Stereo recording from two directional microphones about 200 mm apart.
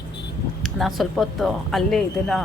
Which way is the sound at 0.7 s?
Centre (ahead or behind).